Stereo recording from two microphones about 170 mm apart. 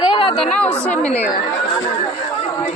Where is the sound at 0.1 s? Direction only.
30° left (ahead or behind).